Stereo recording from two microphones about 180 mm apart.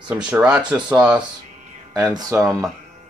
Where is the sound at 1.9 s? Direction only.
20° right (ahead or behind).